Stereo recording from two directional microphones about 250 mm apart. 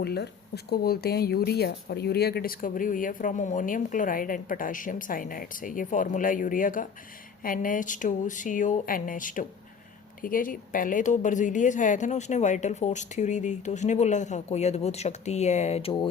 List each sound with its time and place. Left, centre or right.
0.0 s a woman's voice: left